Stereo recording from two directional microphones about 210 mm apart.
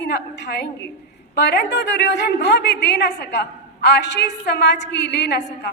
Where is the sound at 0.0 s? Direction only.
55° left (ahead or behind).